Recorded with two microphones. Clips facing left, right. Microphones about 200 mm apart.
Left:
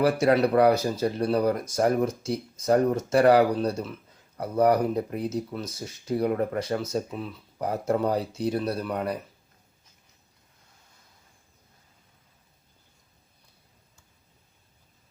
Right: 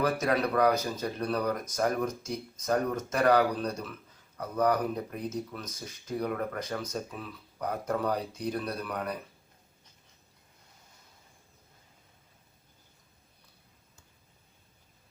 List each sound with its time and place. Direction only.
0.0 s speech: 30° left (ahead or behind)